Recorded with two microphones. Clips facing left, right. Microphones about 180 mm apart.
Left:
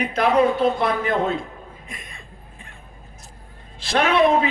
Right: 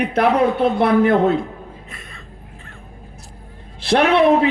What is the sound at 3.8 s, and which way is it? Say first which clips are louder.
Speech: right 4 dB; 65° right (ahead or behind).